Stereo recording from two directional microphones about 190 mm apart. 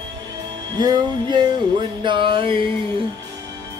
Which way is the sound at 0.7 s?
20° right (ahead or behind).